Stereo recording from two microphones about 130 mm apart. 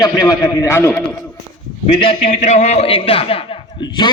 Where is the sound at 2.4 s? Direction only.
65° left (ahead or behind); by 4.1 s 40° left (ahead or behind).